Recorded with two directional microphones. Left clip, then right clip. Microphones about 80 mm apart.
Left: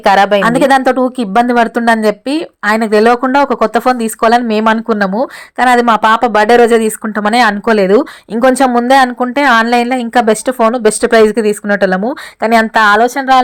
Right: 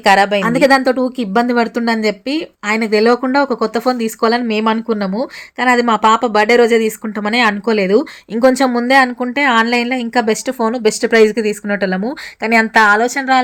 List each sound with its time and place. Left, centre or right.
0.0 s speech: left